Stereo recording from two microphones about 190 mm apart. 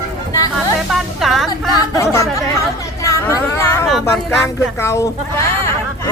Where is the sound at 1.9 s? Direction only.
15° left (ahead or behind).